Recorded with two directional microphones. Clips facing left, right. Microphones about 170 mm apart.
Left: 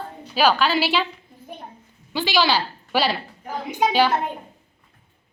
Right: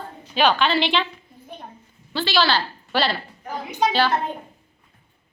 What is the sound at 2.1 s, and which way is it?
A woman's voice, 15° left (ahead or behind).